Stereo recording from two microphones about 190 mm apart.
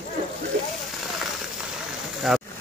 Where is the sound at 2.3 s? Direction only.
Centre (ahead or behind).